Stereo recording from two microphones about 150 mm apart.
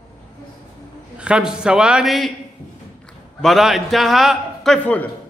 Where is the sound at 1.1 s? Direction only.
5° right (ahead or behind).